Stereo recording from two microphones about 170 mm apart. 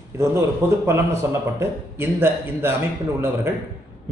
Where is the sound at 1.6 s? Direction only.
15° right (ahead or behind).